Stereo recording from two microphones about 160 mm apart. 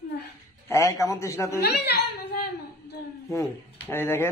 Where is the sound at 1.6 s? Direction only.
85° left.